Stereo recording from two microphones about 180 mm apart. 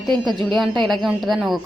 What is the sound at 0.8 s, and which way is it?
Speech, centre (ahead or behind).